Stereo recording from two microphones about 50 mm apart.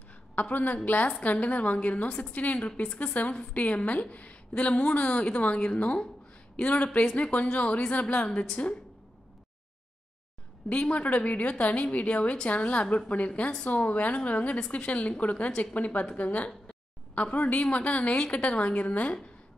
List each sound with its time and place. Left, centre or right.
0.4 s a woman's voice: left
2.0 s a woman's voice: centre
2.3 s a woman's voice: left
10.7 s a woman's voice: left
13.7 s a woman's voice: left